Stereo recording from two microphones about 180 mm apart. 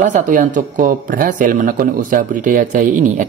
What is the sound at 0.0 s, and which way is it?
Speech, 45° right (ahead or behind).